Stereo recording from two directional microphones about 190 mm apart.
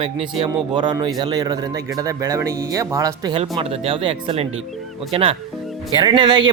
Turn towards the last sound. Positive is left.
turn(degrees=-25)  # may be behind; listen again after turning